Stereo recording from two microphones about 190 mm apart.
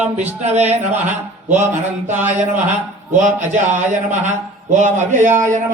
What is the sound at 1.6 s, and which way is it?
A man's voice, 40° right (ahead or behind).